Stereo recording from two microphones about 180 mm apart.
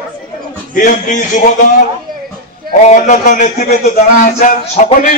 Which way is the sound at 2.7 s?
40° left (ahead or behind).